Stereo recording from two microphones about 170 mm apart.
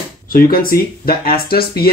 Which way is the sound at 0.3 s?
55° left (ahead or behind).